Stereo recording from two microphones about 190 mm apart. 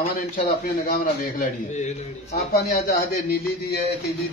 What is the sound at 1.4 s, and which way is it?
A man's voice, 35° left (ahead or behind).